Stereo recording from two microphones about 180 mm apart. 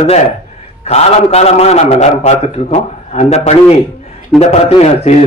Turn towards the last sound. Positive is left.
turn(degrees=35)  # may be behind; listen again after turning